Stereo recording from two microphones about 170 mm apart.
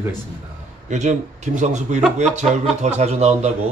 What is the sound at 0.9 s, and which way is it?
A man's voice, 45° right (ahead or behind).